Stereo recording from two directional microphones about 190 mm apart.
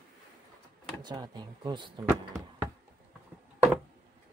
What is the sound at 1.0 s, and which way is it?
Speech, 25° right (ahead or behind).